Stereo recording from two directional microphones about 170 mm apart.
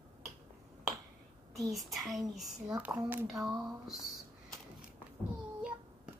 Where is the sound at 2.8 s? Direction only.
10° right (ahead or behind).